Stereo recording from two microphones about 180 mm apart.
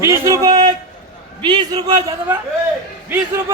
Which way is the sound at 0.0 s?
15° right (ahead or behind).